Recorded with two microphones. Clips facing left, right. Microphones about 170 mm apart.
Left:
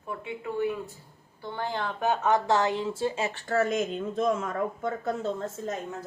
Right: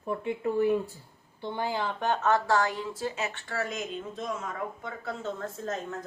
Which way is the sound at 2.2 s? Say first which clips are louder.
Left 1 dB; 20° left (ahead or behind).